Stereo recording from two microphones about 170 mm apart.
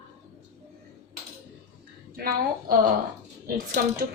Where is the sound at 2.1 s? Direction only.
60° right (ahead or behind).